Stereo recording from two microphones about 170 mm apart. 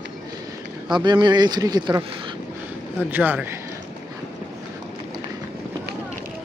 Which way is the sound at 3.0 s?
10° right (ahead or behind).